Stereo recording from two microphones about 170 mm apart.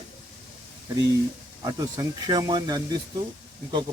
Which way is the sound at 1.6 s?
20° right (ahead or behind).